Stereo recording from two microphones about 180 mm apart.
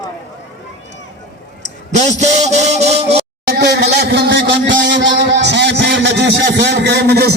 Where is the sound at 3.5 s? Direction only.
65° right (ahead or behind).